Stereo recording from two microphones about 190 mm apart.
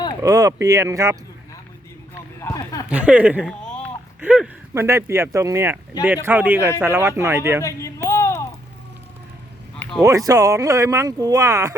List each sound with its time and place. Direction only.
0.2 s speech: 20° right (ahead or behind)
2.4 s speech: 15° left (ahead or behind)
2.9 s speech: 5° right (ahead or behind)
7.6 s a sound: 15° left (ahead or behind)
9.7 s a sound: 5° left (ahead or behind)
10.0 s speech: 15° right (ahead or behind)